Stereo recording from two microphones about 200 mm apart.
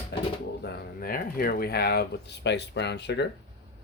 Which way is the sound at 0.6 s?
45° left (ahead or behind).